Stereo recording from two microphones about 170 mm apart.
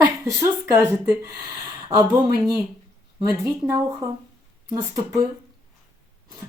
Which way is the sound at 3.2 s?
20° right (ahead or behind).